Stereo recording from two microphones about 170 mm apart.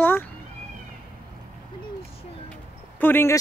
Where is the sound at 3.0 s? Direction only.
15° left (ahead or behind).